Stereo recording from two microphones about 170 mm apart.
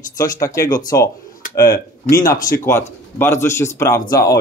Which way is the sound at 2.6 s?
15° left (ahead or behind).